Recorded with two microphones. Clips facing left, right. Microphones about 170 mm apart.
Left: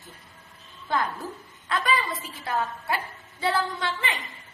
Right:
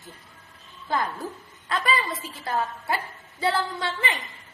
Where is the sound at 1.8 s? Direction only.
Centre (ahead or behind).